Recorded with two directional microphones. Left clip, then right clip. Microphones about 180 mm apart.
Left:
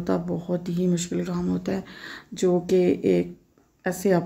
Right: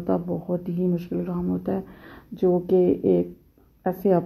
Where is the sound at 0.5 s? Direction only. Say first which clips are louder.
Even; 30° left (ahead or behind).